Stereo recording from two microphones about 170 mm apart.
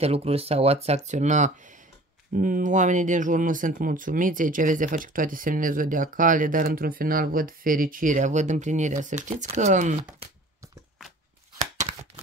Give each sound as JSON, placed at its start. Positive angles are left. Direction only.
{"t": 0.0, "sound": "speech", "side_deg": -35}